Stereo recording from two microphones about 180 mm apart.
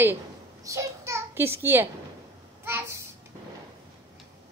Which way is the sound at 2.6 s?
15° right (ahead or behind).